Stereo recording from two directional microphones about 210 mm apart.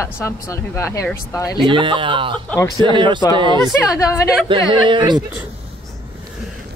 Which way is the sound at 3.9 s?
15° left (ahead or behind).